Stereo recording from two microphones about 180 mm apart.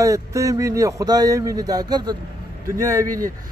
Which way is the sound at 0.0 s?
15° right (ahead or behind).